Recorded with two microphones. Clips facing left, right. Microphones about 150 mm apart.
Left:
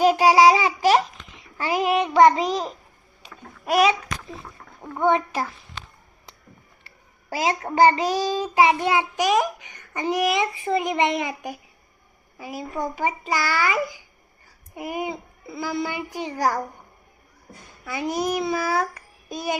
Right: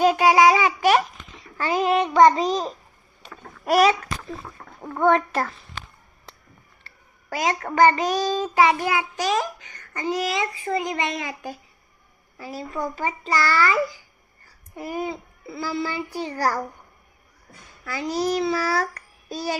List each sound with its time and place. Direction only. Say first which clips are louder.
0.0 s babbling: left 1 dB; 20° left (ahead or behind)
2.2 s a child's voice: even; 20° left (ahead or behind)
4.6 s a sound: right 3 dB; 60° right (ahead or behind)
4.9 s a child's voice: right 2 dB; 20° left (ahead or behind)
7.3 s a child's voice: left 1 dB; 25° left (ahead or behind)
8.2 s child singing: right 1 dB; 20° right (ahead or behind)
8.5 s a child's voice: left 1 dB; 25° left (ahead or behind)
17.8 s a child's voice: right 1 dB; 15° left (ahead or behind)